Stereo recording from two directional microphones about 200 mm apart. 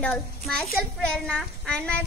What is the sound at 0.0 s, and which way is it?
A child's voice, 5° left (ahead or behind).